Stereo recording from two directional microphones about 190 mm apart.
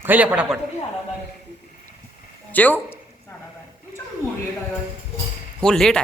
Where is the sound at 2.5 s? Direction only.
10° left (ahead or behind).